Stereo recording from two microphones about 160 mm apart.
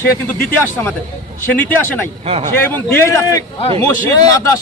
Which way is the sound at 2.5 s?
15° left (ahead or behind).